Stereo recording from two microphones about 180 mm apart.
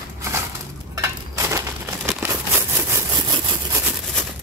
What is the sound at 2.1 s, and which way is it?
Crumpling, 10° right (ahead or behind).